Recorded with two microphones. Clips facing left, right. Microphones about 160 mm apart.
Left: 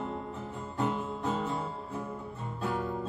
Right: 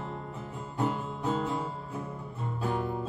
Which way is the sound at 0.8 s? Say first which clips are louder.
Right 1 dB; centre (ahead or behind).